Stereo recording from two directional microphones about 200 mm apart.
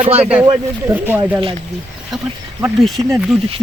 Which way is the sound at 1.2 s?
25° right (ahead or behind).